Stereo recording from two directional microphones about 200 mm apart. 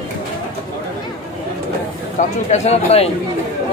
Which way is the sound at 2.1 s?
35° left (ahead or behind).